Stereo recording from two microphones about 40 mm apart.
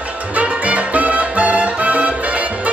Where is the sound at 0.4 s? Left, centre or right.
Right.